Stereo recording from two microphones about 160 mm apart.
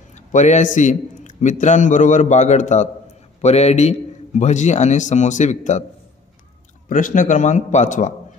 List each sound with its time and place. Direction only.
0.1 s a man's voice: 50° left (ahead or behind)
6.9 s a man's voice: 55° left (ahead or behind)